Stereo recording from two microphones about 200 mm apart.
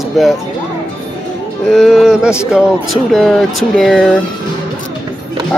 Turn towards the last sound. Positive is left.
turn(degrees=0)  # may be behind; listen again after turning